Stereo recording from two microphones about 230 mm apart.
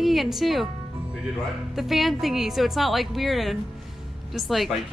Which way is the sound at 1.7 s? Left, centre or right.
Centre.